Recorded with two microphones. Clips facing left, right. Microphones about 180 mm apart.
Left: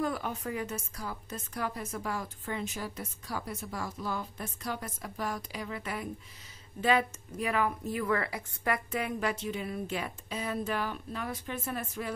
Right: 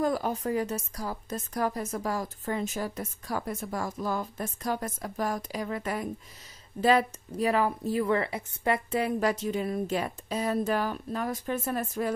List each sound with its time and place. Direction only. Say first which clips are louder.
0.0 s a woman's voice: right 5 dB; 35° right (ahead or behind)